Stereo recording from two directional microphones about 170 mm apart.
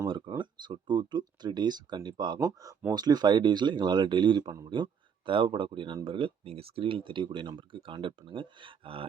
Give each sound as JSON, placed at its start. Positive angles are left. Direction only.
{"t": 0.1, "sound": "speech", "side_deg": -25}